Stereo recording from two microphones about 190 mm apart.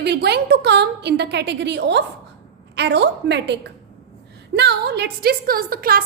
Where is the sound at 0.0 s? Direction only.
60° right (ahead or behind).